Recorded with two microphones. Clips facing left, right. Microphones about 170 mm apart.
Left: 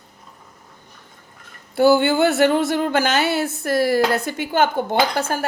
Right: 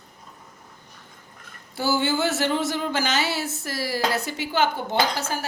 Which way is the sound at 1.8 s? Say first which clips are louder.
Left 8 dB; 60° left (ahead or behind).